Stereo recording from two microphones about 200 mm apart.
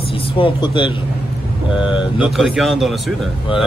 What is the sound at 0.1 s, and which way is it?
Speech, 25° left (ahead or behind).